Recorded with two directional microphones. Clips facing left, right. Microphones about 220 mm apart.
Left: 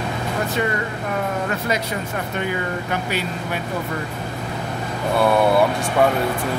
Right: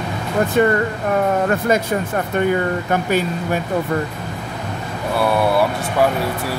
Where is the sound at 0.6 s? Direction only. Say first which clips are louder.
Right 9 dB; 50° right (ahead or behind).